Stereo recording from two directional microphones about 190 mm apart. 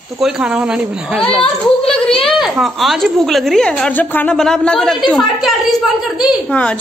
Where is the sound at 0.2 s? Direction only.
5° right (ahead or behind).